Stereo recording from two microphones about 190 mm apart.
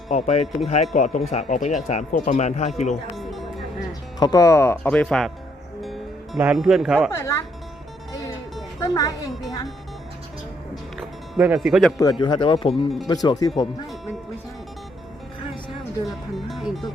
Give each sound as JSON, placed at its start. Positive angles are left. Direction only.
{"t": 0.1, "sound": "speech", "side_deg": 35}
{"t": 3.2, "sound": "music", "side_deg": 0}
{"t": 4.2, "sound": "speech", "side_deg": 20}
{"t": 7.1, "sound": "speech", "side_deg": 15}
{"t": 8.8, "sound": "speech", "side_deg": 20}
{"t": 10.9, "sound": "speech", "side_deg": -5}
{"t": 12.2, "sound": "speech", "side_deg": 25}
{"t": 16.0, "sound": "speech", "side_deg": 0}